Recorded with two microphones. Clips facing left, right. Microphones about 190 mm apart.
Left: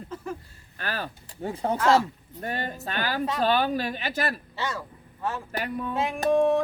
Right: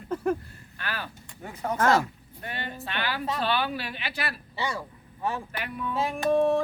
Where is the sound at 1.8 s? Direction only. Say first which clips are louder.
Left 1 dB; 50° right (ahead or behind).